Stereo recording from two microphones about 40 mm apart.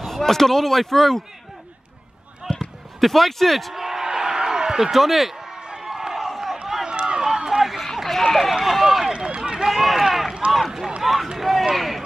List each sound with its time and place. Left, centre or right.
0.0 s speech: centre
2.6 s speech: centre
3.7 s a sound: centre
4.9 s speech: centre
5.6 s run: right
5.9 s crowd: centre
6.7 s run: centre
7.8 s run: centre
9.1 s run: right
9.7 s run: centre
11.3 s a sound: centre